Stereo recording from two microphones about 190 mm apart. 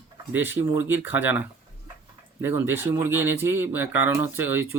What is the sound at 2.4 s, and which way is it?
Speech, 10° right (ahead or behind).